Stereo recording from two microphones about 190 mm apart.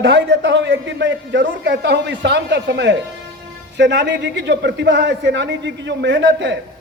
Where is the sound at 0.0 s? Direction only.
70° right (ahead or behind).